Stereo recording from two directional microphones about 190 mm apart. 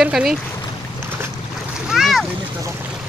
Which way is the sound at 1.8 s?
Centre (ahead or behind).